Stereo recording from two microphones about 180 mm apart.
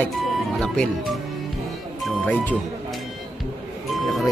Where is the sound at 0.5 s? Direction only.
Centre (ahead or behind).